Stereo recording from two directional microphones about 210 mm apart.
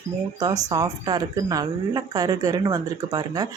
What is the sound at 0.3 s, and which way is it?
Speech, 15° right (ahead or behind).